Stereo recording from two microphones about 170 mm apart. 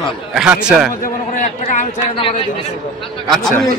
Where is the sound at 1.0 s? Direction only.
45° left (ahead or behind).